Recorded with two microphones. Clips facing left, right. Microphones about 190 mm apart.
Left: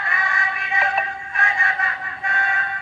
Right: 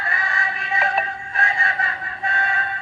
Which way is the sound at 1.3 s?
30° right (ahead or behind).